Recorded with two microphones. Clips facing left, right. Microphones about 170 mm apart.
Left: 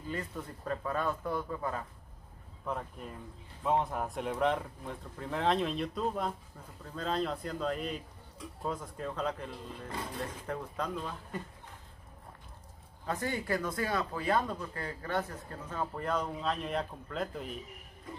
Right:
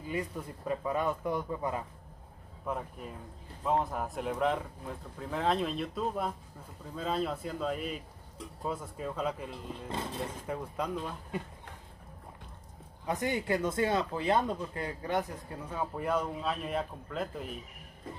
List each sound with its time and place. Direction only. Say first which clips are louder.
0.1 s speech: right 3 dB; 10° right (ahead or behind)
2.6 s speech: right 1 dB; 5° right (ahead or behind)
13.0 s speech: right 3 dB; 15° right (ahead or behind); by 17.6 s centre (ahead or behind)